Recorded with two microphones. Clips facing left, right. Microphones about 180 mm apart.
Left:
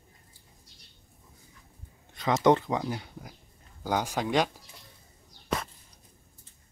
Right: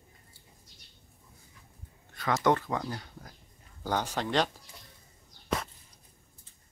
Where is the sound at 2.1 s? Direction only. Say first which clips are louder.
Left 4 dB; 20° left (ahead or behind).